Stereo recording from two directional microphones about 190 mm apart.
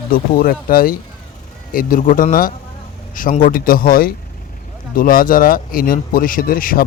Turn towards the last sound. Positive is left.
turn(degrees=50)  # may be behind; listen again after turning